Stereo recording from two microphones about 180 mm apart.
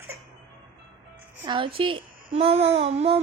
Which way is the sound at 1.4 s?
25° right (ahead or behind).